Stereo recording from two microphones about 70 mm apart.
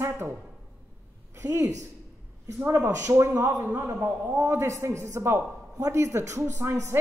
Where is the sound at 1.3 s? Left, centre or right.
Right.